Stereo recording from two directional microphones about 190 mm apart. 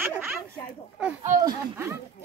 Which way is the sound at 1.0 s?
5° right (ahead or behind).